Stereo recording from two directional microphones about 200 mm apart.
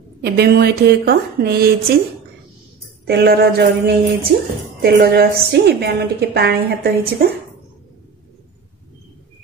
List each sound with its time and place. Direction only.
0.2 s a woman's voice: 50° right (ahead or behind)
3.1 s a woman's voice: 55° right (ahead or behind)